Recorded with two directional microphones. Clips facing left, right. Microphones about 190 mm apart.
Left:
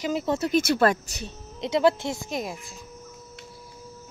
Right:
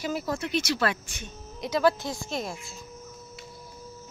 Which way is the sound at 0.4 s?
45° left (ahead or behind).